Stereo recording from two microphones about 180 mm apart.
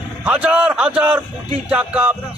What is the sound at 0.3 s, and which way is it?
A man's voice, 5° right (ahead or behind).